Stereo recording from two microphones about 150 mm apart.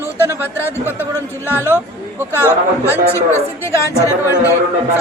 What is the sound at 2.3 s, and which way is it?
Speech, 15° left (ahead or behind).